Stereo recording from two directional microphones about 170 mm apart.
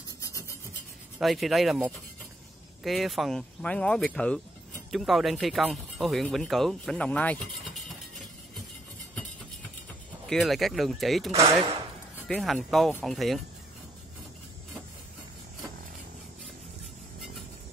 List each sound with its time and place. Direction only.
0.2 s rub: 20° left (ahead or behind)
1.2 s speech: centre (ahead or behind)
10.2 s speech: centre (ahead or behind)